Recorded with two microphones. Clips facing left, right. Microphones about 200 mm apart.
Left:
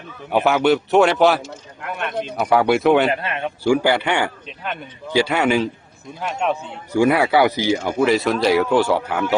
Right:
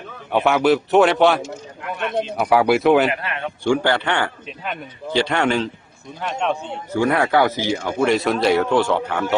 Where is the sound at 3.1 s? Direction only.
25° left (ahead or behind).